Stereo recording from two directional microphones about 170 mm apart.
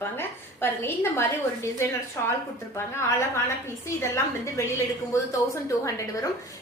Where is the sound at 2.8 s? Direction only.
15° left (ahead or behind).